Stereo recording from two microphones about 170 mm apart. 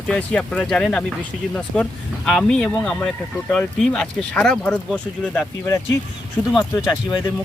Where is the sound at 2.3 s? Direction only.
5° left (ahead or behind).